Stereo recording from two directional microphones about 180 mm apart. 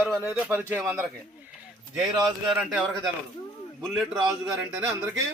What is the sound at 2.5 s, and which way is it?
A man's voice, centre (ahead or behind).